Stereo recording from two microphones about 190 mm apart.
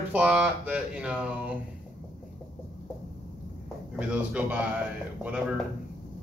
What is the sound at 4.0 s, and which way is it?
Speech, 5° right (ahead or behind).